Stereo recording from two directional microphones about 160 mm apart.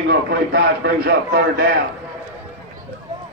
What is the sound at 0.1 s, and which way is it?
A man's voice, 75° right (ahead or behind).